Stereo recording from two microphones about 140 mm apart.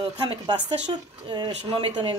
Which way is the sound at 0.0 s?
35° right (ahead or behind).